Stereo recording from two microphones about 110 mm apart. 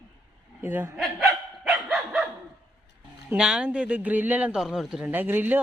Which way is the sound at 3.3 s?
5° right (ahead or behind).